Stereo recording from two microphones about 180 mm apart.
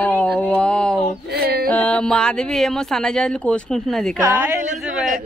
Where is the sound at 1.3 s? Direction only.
60° right (ahead or behind).